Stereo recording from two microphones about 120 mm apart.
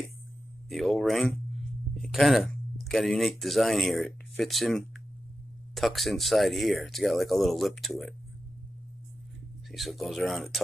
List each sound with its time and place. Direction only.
0.7 s speech: centre (ahead or behind)
9.7 s speech: centre (ahead or behind)